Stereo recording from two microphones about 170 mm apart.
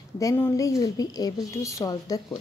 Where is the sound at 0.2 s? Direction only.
20° left (ahead or behind).